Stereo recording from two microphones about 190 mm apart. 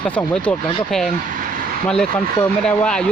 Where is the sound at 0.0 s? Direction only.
5° left (ahead or behind).